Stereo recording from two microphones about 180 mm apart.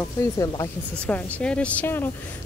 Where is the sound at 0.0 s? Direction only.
15° left (ahead or behind).